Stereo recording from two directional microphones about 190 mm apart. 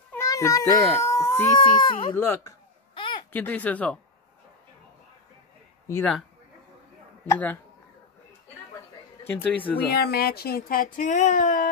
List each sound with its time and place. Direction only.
0.1 s cat: 15° left (ahead or behind)
1.0 s a sound: 15° left (ahead or behind)
1.6 s speech: 25° left (ahead or behind)
2.1 s speech: 15° left (ahead or behind)
2.9 s a sound: 25° left (ahead or behind)
3.3 s speech: 10° left (ahead or behind)
7.2 s speech: 10° left (ahead or behind)
9.3 s speech: 10° left (ahead or behind)
9.8 s speech: 55° left (ahead or behind)